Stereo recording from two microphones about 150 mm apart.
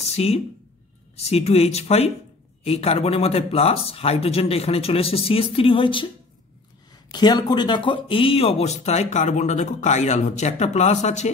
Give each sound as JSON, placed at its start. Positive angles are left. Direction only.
{"t": 0.0, "sound": "a sound", "side_deg": 45}
{"t": 1.1, "sound": "speech", "side_deg": 45}
{"t": 7.1, "sound": "speech", "side_deg": 30}